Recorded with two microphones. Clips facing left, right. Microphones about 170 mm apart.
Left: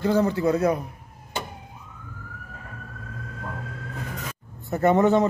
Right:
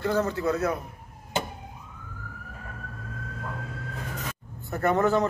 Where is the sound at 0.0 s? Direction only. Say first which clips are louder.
Left 4 dB; 15° left (ahead or behind).